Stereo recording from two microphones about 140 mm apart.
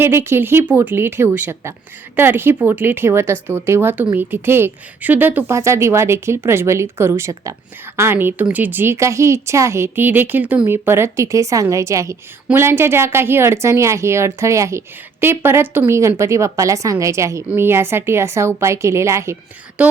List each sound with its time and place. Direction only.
0.0 s a woman's voice: 15° right (ahead or behind)
19.8 s a woman's voice: 10° right (ahead or behind)